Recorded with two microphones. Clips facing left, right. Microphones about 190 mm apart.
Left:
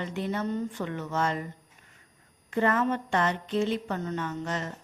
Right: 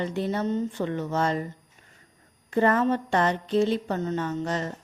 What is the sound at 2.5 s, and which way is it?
Speech, 35° right (ahead or behind).